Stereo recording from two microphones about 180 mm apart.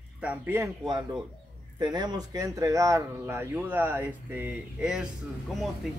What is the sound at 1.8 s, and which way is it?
A man's voice, 25° right (ahead or behind).